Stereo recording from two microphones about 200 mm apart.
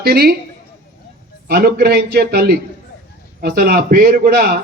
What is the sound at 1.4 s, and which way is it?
A man's voice, 50° right (ahead or behind).